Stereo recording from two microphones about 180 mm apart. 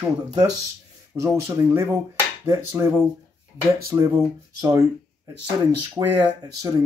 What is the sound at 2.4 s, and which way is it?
Speech, 15° right (ahead or behind).